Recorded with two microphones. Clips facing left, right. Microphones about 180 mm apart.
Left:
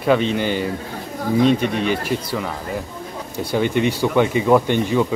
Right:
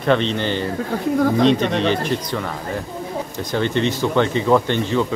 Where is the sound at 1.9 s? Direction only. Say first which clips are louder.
Right 1 dB; 5° left (ahead or behind).